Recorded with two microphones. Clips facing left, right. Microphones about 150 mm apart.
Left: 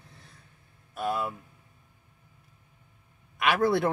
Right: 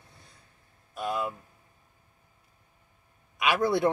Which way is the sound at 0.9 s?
5° left (ahead or behind).